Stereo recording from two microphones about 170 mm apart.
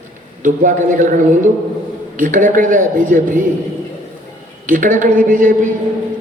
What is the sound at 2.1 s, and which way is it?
A man's voice, 50° right (ahead or behind).